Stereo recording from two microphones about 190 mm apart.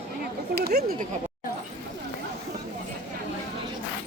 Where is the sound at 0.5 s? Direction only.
55° right (ahead or behind).